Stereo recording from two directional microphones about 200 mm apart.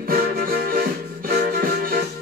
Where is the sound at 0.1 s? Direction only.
50° right (ahead or behind).